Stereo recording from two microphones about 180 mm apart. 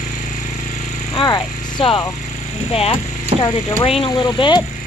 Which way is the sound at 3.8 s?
30° left (ahead or behind).